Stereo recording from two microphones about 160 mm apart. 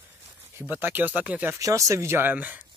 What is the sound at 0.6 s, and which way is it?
Speech, 15° right (ahead or behind).